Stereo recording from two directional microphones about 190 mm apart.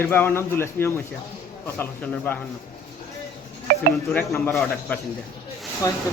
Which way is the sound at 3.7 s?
55° right (ahead or behind).